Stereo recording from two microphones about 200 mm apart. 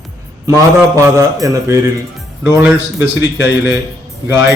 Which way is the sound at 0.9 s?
15° right (ahead or behind).